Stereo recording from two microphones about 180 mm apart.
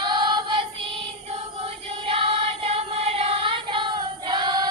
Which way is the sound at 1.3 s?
35° right (ahead or behind).